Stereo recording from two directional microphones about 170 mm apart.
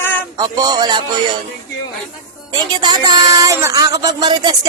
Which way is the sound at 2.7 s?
25° right (ahead or behind).